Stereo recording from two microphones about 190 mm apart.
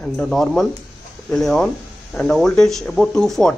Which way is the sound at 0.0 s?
5° left (ahead or behind).